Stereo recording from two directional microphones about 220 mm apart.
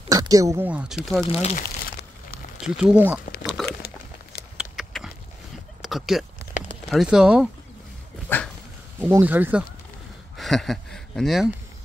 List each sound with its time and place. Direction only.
0.1 s speech: 15° right (ahead or behind)
1.3 s speech: 30° left (ahead or behind)
2.6 s speech: 5° right (ahead or behind)
3.6 s a sound: centre (ahead or behind)
6.9 s speech: centre (ahead or behind)
8.3 s dog: 10° left (ahead or behind)
9.1 s speech: 10° right (ahead or behind)